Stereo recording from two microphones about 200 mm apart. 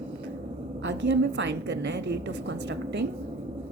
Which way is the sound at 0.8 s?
60° right (ahead or behind).